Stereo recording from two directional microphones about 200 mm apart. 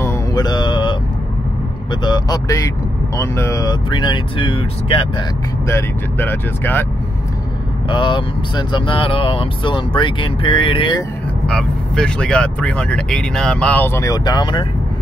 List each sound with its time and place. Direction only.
0.0 s mantra: 20° left (ahead or behind)
2.0 s speech: 20° left (ahead or behind)
5.7 s speech: 10° left (ahead or behind)
7.9 s speech: 25° left (ahead or behind)
11.4 s speech: 5° left (ahead or behind); by 14.7 s 25° left (ahead or behind)